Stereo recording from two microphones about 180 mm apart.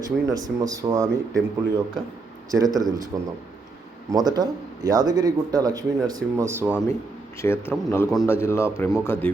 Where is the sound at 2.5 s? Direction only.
20° right (ahead or behind).